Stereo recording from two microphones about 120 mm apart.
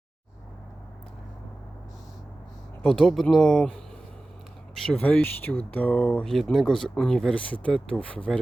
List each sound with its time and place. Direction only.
2.8 s speech: 5° left (ahead or behind)
4.9 s speech: 15° left (ahead or behind)